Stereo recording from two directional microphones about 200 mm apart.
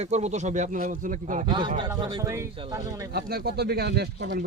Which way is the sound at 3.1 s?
50° right (ahead or behind).